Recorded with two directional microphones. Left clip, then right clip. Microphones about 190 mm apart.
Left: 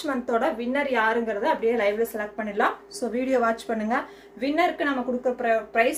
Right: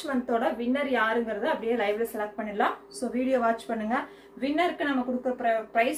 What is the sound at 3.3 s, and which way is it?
A woman's voice, 50° left (ahead or behind).